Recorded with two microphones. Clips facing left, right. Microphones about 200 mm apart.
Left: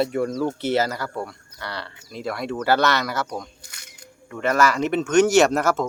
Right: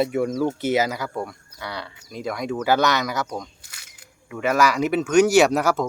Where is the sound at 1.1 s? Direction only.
Centre (ahead or behind).